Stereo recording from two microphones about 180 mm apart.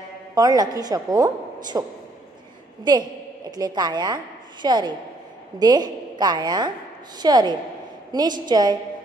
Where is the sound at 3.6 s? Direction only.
25° right (ahead or behind).